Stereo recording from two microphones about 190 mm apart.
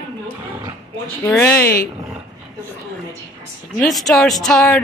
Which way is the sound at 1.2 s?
10° left (ahead or behind).